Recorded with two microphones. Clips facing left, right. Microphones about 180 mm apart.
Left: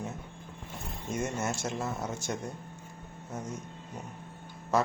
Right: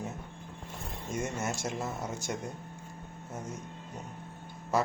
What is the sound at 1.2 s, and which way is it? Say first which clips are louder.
Speech: left 2 dB; centre (ahead or behind).